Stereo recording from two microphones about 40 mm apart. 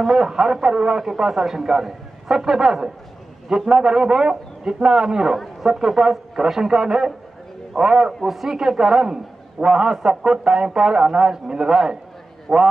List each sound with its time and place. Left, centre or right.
0.0 s a man's voice: centre
0.3 s a man's voice: centre
8.1 s a man's voice: centre
12.5 s a man's voice: centre